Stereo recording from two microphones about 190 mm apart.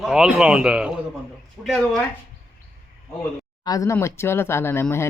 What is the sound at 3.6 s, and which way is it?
Speech, 20° left (ahead or behind).